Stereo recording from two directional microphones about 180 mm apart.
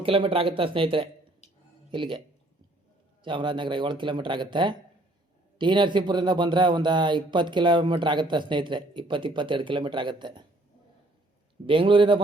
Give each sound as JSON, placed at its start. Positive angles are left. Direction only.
{"t": 0.0, "sound": "speech", "side_deg": -30}
{"t": 3.2, "sound": "speech", "side_deg": -25}
{"t": 11.6, "sound": "speech", "side_deg": -30}